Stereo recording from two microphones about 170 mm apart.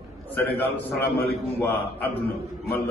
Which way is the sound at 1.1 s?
70° left (ahead or behind).